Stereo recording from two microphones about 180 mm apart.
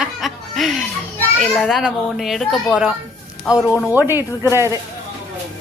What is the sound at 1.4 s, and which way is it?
A child's voice, 5° left (ahead or behind).